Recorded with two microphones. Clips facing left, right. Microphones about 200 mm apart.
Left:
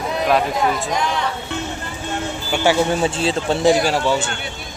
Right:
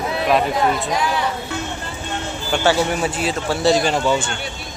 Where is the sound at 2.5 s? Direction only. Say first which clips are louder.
Even; 15° left (ahead or behind).